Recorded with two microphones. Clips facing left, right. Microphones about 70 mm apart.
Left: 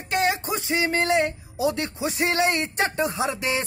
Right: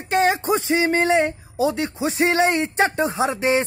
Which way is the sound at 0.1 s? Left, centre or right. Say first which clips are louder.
Right 5 dB; right.